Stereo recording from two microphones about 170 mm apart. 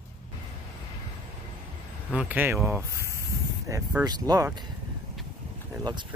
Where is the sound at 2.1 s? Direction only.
10° right (ahead or behind).